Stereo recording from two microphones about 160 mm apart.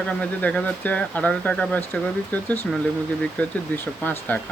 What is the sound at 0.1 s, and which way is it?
Speech, 5° left (ahead or behind).